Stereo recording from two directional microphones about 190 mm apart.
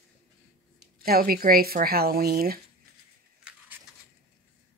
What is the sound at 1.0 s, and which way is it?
Speech, 50° right (ahead or behind).